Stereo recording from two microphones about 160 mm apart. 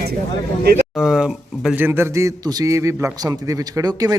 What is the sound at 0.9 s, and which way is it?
A man's voice, 5° right (ahead or behind).